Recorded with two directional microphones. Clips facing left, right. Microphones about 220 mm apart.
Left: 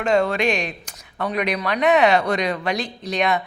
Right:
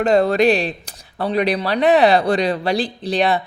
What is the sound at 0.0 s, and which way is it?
A woman's voice, 35° right (ahead or behind).